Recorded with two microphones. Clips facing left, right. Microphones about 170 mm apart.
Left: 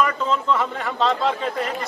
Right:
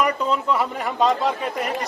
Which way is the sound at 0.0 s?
10° right (ahead or behind).